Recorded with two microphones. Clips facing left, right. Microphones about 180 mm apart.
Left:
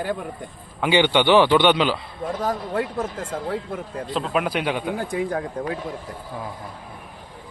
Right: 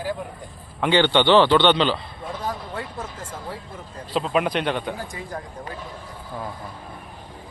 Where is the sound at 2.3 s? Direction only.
45° left (ahead or behind); by 4.0 s 65° left (ahead or behind).